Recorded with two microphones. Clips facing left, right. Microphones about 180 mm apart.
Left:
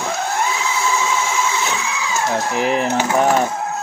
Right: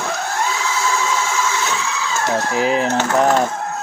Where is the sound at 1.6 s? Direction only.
15° left (ahead or behind).